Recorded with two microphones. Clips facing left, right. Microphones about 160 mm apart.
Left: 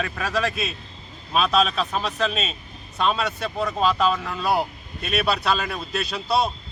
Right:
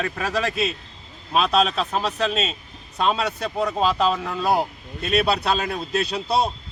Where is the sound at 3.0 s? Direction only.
20° right (ahead or behind).